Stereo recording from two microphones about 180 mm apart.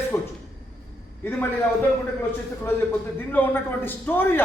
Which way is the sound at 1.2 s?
10° left (ahead or behind).